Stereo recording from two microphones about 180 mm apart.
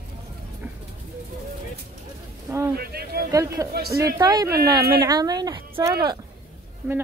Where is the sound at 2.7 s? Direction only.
60° right (ahead or behind).